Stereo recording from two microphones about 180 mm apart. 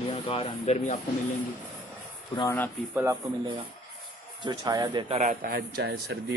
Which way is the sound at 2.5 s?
10° left (ahead or behind).